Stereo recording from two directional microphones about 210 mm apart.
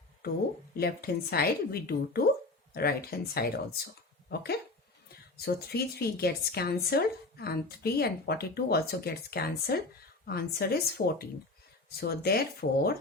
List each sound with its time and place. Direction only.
0.2 s speech: 45° left (ahead or behind)
5.6 s speech: 50° left (ahead or behind)